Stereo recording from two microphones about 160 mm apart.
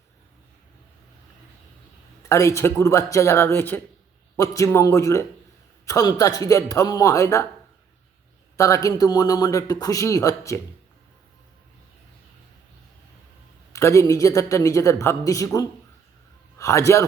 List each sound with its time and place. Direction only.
2.3 s a man's voice: 20° left (ahead or behind)
8.5 s a man's voice: 20° left (ahead or behind)
13.7 s a man's voice: 20° left (ahead or behind)